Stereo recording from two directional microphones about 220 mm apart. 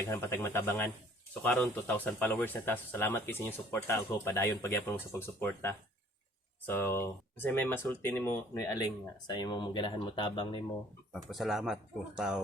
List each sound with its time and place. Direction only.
0.1 s speech: 10° left (ahead or behind)
11.1 s speech: centre (ahead or behind)